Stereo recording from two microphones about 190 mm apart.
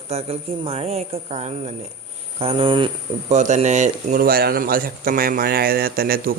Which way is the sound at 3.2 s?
40° right (ahead or behind).